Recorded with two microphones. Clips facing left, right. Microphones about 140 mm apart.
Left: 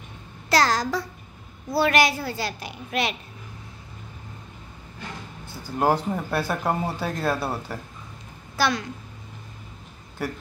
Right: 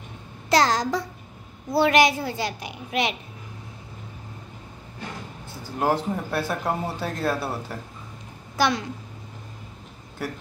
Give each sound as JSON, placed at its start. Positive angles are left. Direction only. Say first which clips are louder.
{"t": 0.5, "sound": "a woman's voice", "louder": "right 1 dB", "side_deg": -20}
{"t": 5.6, "sound": "speech", "louder": "left 1 dB", "side_deg": 0}
{"t": 8.5, "sound": "a woman's voice", "louder": "right 1 dB", "side_deg": -20}